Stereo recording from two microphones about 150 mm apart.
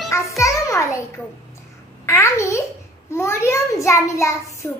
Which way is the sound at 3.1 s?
15° left (ahead or behind).